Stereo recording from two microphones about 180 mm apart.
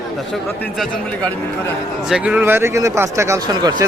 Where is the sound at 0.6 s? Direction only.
5° left (ahead or behind).